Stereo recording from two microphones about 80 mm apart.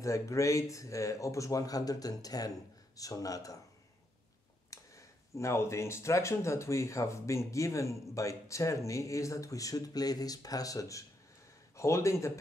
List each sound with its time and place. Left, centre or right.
0.0 s speech: left
4.6 s speech: left